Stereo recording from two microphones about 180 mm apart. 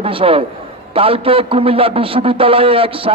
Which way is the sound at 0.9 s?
30° right (ahead or behind).